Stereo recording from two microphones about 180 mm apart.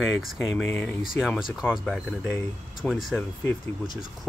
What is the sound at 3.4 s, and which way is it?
Speech, 25° left (ahead or behind).